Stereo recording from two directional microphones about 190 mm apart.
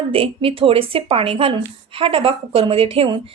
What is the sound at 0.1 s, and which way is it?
Speech, 30° right (ahead or behind).